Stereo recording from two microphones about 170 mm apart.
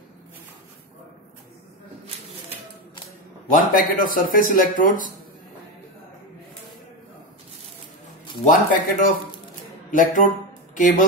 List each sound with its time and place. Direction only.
3.4 s speech: 50° left (ahead or behind)
8.5 s speech: 50° left (ahead or behind)